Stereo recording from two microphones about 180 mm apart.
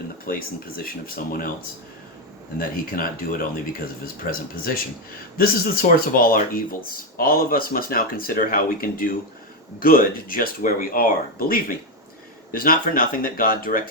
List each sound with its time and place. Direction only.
0.3 s speech: 55° left (ahead or behind)
2.6 s speech: 50° left (ahead or behind)